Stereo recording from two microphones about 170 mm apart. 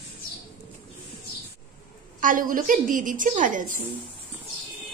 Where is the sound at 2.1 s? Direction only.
50° right (ahead or behind).